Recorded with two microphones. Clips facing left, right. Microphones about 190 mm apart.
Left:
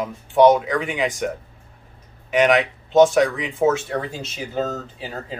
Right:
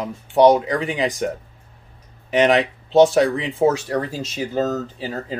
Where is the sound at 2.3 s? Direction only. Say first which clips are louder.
Right 1 dB; 35° right (ahead or behind).